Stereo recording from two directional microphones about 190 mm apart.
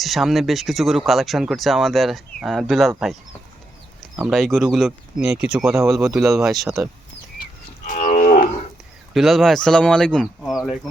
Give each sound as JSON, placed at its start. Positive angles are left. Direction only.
{"t": 0.0, "sound": "speech", "side_deg": 0}
{"t": 4.2, "sound": "speech", "side_deg": 0}
{"t": 7.9, "sound": "livestock", "side_deg": 45}
{"t": 9.1, "sound": "speech", "side_deg": 0}